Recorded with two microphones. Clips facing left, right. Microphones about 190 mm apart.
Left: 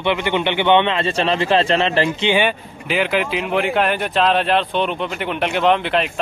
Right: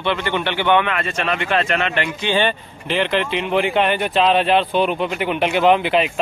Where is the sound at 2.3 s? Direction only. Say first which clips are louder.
Left 1 dB; 10° left (ahead or behind).